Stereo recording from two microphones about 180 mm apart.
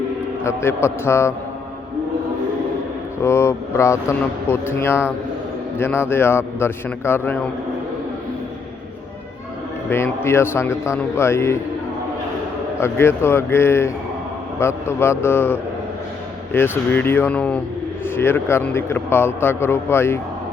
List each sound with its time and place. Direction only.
0.4 s a man's voice: 15° left (ahead or behind)
3.2 s a man's voice: 15° left (ahead or behind)
9.9 s a man's voice: 15° left (ahead or behind)
12.8 s a man's voice: 15° left (ahead or behind)